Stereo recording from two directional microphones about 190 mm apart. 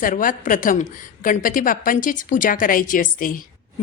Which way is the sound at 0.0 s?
45° left (ahead or behind).